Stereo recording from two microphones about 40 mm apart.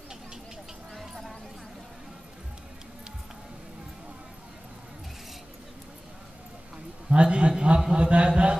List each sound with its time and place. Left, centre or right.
7.1 s a man's voice: right